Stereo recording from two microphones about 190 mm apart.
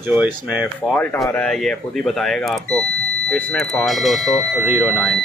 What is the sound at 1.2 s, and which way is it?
Speech, 5° left (ahead or behind).